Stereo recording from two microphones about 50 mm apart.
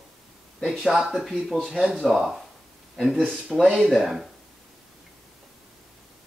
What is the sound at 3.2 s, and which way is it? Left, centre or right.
Speech, centre.